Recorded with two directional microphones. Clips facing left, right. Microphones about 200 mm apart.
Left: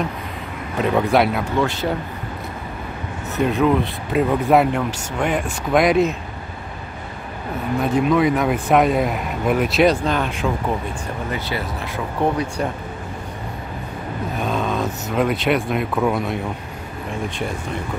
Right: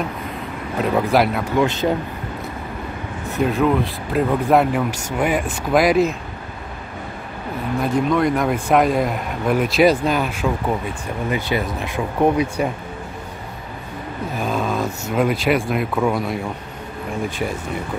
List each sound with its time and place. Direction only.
0.7 s speech: centre (ahead or behind)
1.6 s speech: 20° right (ahead or behind)
3.3 s speech: centre (ahead or behind)
7.8 s speech: centre (ahead or behind)
14.4 s speech: centre (ahead or behind)